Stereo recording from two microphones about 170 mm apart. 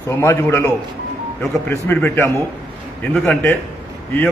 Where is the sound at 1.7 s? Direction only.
15° left (ahead or behind).